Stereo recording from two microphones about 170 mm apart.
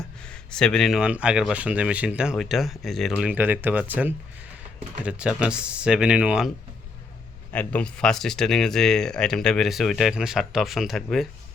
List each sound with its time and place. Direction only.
0.0 s speech: 5° left (ahead or behind)
7.5 s speech: 10° left (ahead or behind)